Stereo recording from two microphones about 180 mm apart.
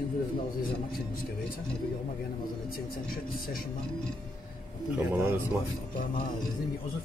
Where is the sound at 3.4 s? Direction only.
50° left (ahead or behind).